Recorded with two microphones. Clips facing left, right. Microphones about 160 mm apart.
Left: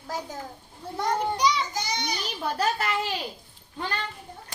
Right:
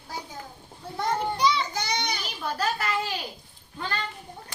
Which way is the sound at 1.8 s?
65° right (ahead or behind).